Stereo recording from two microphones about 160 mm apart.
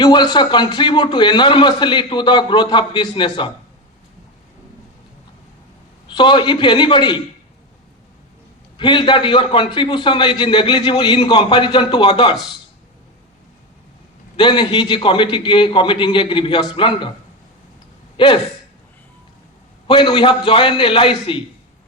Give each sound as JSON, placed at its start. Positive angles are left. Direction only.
{"t": 0.0, "sound": "a man's voice", "side_deg": 25}
{"t": 6.1, "sound": "a man's voice", "side_deg": 30}
{"t": 8.8, "sound": "a man's voice", "side_deg": 30}
{"t": 14.3, "sound": "a man's voice", "side_deg": 30}
{"t": 19.9, "sound": "a man's voice", "side_deg": 30}